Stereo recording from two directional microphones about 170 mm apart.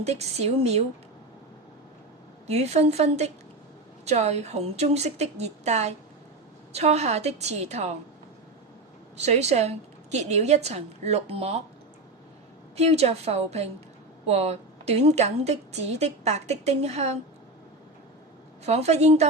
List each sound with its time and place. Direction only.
0.0 s a woman's voice: 40° right (ahead or behind)
2.5 s a woman's voice: 40° right (ahead or behind)
9.1 s a woman's voice: 40° right (ahead or behind)
12.7 s a woman's voice: 40° right (ahead or behind)
18.6 s a woman's voice: 40° right (ahead or behind)